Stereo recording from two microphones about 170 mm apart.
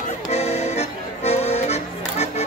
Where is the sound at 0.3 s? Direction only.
40° left (ahead or behind).